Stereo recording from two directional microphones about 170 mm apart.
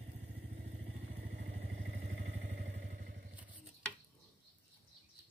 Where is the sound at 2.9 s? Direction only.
60° right (ahead or behind).